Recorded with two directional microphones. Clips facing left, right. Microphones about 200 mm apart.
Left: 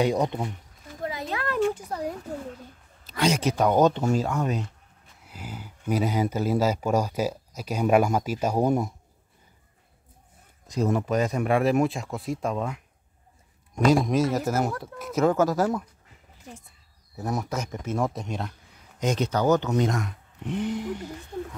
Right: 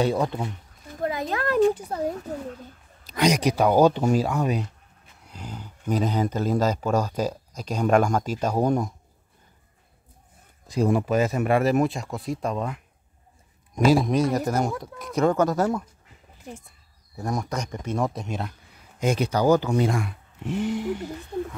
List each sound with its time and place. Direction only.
0.0 s speech: 15° left (ahead or behind)
1.0 s a sound: 50° right (ahead or behind); by 2.1 s 30° right (ahead or behind)
3.1 s speech: 15° right (ahead or behind)
5.2 s speech: 5° left (ahead or behind)
10.7 s speech: 10° right (ahead or behind)
17.1 s speech: 5° left (ahead or behind)